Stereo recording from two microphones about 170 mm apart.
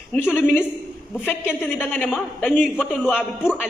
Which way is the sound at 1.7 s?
10° left (ahead or behind).